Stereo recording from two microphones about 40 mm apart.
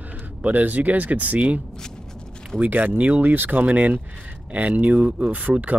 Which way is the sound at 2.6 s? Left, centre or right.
Right.